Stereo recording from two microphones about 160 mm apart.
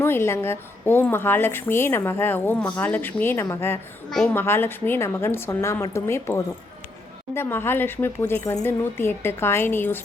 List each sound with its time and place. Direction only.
0.0 s a woman's voice: 15° left (ahead or behind)